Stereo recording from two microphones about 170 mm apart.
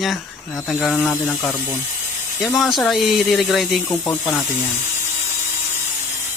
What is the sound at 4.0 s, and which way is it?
Speech, 15° left (ahead or behind).